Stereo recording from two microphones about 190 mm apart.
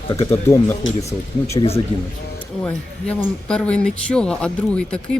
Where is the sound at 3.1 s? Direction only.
5° left (ahead or behind).